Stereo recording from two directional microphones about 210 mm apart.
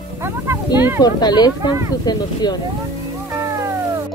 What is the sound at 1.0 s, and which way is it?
A woman's voice, 20° left (ahead or behind).